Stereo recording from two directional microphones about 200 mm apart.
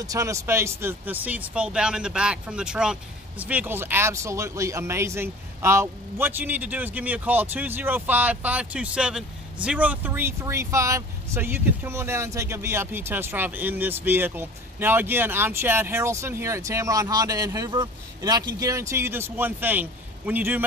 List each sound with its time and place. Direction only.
0.0 s speech: 15° right (ahead or behind)